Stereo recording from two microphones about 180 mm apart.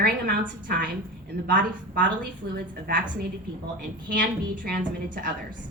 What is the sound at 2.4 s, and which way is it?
Speech, 60° right (ahead or behind).